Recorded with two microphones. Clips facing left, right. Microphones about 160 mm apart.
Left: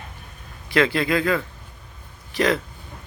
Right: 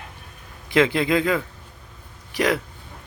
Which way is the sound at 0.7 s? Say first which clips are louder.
Right 1 dB; 15° right (ahead or behind).